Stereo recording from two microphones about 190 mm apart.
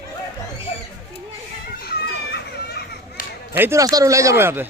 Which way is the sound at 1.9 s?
55° left (ahead or behind).